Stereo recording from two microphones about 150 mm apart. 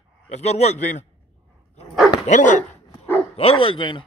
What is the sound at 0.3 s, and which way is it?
Speech, 45° left (ahead or behind).